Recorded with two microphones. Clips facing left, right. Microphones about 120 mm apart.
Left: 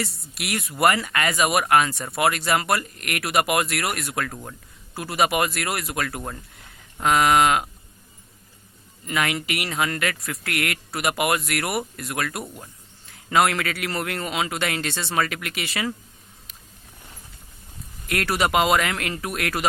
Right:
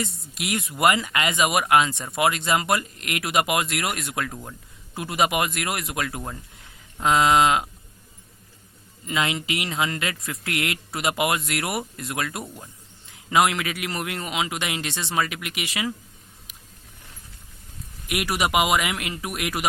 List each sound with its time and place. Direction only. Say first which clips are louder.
0.0 s speech: right 1 dB; 20° right (ahead or behind)
9.0 s speech: left 1 dB; 20° right (ahead or behind)
18.0 s speech: left 2 dB; 15° right (ahead or behind)